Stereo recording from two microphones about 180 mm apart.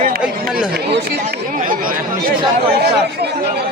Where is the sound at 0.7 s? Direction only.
60° right (ahead or behind).